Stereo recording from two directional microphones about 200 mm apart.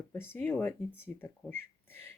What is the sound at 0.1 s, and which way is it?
Speech, 10° left (ahead or behind).